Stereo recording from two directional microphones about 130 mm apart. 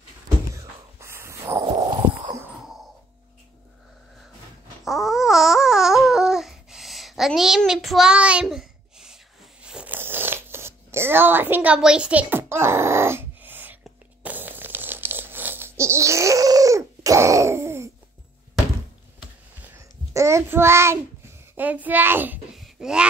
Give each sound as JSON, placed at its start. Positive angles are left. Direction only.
{"t": 0.9, "sound": "snort", "side_deg": -20}
{"t": 1.7, "sound": "stomach rumble", "side_deg": -35}
{"t": 4.8, "sound": "babbling", "side_deg": 0}
{"t": 14.2, "sound": "a sound", "side_deg": -15}
{"t": 20.2, "sound": "child singing", "side_deg": -20}
{"t": 22.6, "sound": "a sound", "side_deg": -5}